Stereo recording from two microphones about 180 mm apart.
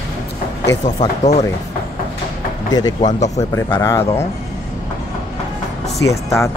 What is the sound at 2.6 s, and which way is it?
Speech, 20° left (ahead or behind).